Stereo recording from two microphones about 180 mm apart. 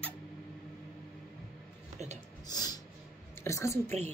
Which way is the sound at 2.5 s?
20° left (ahead or behind).